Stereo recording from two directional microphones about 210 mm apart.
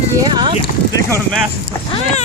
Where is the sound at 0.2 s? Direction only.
20° right (ahead or behind).